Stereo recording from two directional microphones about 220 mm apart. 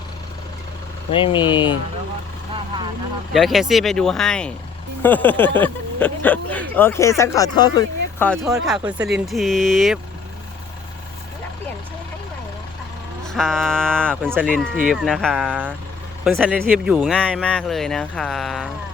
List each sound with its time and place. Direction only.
1.1 s speech: 25° left (ahead or behind)
3.3 s speech: centre (ahead or behind); by 8.3 s 15° left (ahead or behind)
8.3 s speech: centre (ahead or behind)
13.2 s speech: centre (ahead or behind)